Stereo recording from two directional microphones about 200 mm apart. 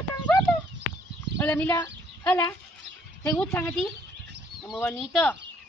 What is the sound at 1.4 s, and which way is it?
Speech, 10° left (ahead or behind).